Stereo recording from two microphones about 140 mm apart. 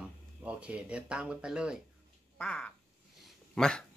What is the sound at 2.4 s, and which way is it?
Speech, 5° left (ahead or behind).